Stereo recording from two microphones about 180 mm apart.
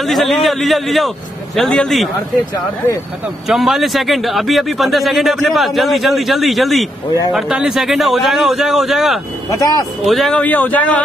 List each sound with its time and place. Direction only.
0.0 s a man's voice: centre (ahead or behind)
3.4 s a man's voice: centre (ahead or behind)
9.5 s speech: 20° left (ahead or behind)
10.0 s speech: centre (ahead or behind)